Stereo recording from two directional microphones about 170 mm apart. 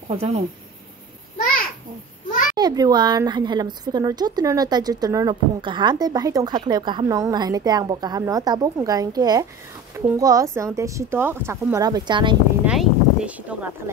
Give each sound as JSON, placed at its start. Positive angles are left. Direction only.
{"t": 0.1, "sound": "speech", "side_deg": -35}
{"t": 2.5, "sound": "a woman's voice", "side_deg": -25}
{"t": 12.6, "sound": "a sound", "side_deg": -5}